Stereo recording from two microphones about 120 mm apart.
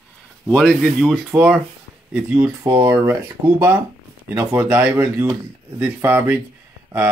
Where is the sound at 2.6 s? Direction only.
30° right (ahead or behind).